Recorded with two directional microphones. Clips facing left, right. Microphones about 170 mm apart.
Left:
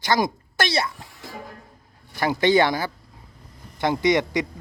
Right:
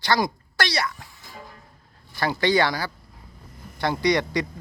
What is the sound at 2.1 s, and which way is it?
Speech, 15° left (ahead or behind).